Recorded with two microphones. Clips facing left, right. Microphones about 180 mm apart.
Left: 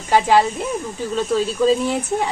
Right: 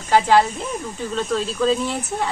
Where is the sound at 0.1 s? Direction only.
10° left (ahead or behind).